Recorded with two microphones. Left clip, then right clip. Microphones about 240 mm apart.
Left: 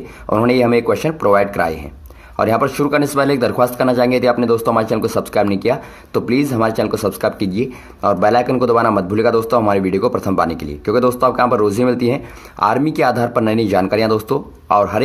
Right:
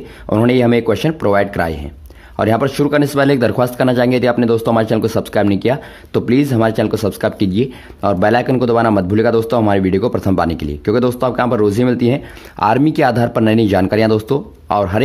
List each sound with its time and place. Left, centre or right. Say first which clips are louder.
0.3 s speech: even; right
2.3 s speech: even; right
10.2 s speech: right 1 dB; right